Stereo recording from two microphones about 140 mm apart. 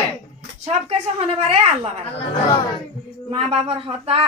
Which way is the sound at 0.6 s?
50° right (ahead or behind).